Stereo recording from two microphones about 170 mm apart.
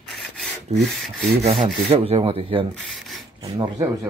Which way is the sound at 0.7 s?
40° right (ahead or behind).